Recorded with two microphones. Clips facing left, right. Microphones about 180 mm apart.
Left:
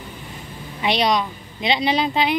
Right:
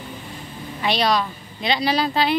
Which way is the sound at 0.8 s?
20° left (ahead or behind).